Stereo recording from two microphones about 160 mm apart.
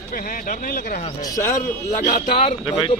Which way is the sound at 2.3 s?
40° left (ahead or behind).